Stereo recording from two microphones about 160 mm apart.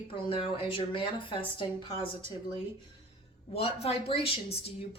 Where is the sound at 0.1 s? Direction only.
35° left (ahead or behind).